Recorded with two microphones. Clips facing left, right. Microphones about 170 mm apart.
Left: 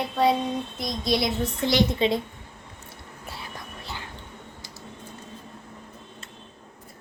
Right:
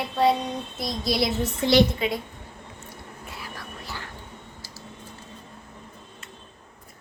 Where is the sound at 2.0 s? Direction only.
25° left (ahead or behind).